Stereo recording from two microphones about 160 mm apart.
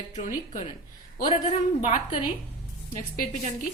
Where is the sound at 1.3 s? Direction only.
40° left (ahead or behind).